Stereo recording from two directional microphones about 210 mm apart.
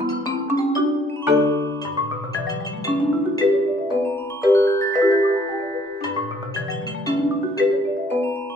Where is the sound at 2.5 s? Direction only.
20° left (ahead or behind).